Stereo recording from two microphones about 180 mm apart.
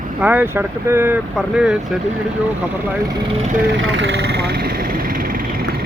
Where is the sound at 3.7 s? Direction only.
80° right; by 5.8 s 60° right (ahead or behind).